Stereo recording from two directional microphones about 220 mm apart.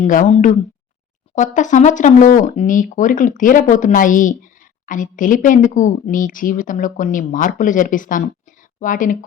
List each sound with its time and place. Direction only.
0.0 s speech: 35° left (ahead or behind)